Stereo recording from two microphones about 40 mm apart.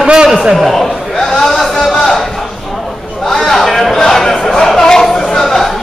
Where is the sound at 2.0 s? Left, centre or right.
Centre.